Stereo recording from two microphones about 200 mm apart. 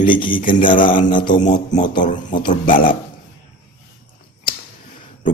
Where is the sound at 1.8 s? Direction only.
25° left (ahead or behind).